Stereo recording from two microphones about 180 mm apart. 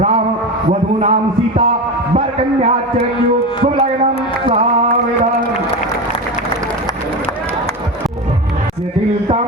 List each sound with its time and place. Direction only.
0.7 s a man's voice: 40° right (ahead or behind)
2.1 s a man's voice: 40° right (ahead or behind)